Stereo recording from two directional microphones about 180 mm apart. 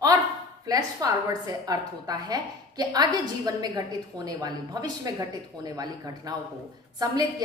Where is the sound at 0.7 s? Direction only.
20° right (ahead or behind).